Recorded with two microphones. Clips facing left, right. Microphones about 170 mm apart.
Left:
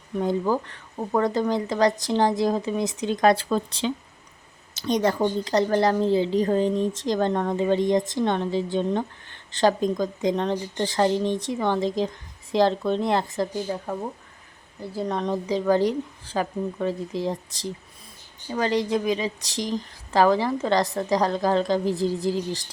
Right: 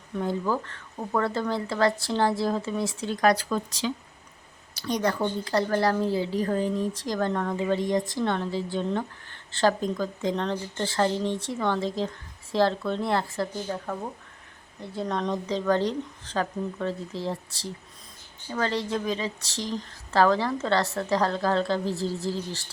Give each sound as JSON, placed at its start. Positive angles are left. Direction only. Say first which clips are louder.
{"t": 0.2, "sound": "a woman's voice", "louder": "left 4 dB", "side_deg": 15}
{"t": 14.8, "sound": "speech", "louder": "left 2 dB", "side_deg": 5}